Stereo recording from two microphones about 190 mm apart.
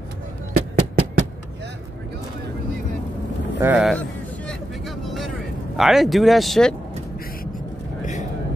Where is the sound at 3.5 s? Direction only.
5° right (ahead or behind).